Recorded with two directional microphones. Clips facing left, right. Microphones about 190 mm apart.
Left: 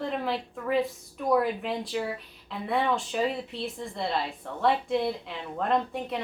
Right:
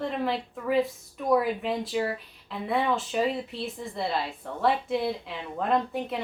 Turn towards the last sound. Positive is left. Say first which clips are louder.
# right 1 dB
turn(degrees=0)  # may be behind; listen again after turning